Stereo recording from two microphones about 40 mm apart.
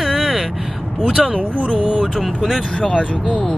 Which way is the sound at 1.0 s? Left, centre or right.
Centre.